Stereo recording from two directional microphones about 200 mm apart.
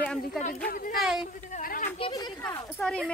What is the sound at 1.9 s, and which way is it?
Speech, 25° left (ahead or behind).